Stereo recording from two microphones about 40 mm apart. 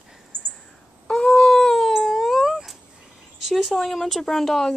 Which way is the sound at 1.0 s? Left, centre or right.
Left.